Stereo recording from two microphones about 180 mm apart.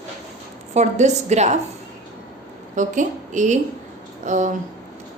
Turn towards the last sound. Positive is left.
turn(degrees=-45)  # may be behind; listen again after turning